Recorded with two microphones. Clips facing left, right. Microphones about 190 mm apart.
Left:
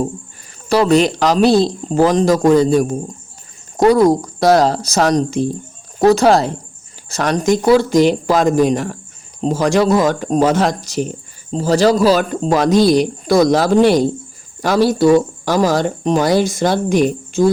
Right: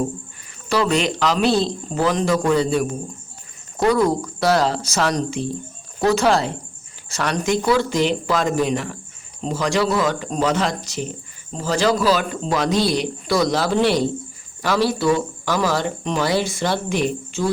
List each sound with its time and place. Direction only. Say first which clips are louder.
0.7 s speech: left 7 dB; 40° left (ahead or behind)